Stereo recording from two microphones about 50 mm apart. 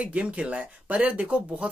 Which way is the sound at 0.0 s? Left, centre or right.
Right.